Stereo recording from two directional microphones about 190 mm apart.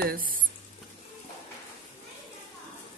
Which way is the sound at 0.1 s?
50° right (ahead or behind).